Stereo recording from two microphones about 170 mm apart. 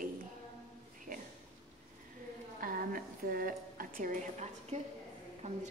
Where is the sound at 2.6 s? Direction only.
55° right (ahead or behind).